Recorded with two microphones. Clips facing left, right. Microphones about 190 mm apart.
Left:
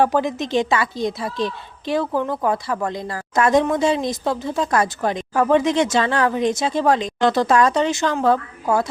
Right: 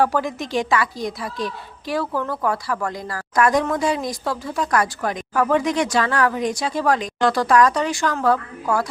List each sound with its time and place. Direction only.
0.0 s a woman's voice: 20° left (ahead or behind)